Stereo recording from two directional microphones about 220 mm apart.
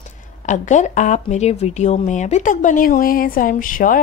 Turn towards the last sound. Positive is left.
turn(degrees=40)  # may be behind; listen again after turning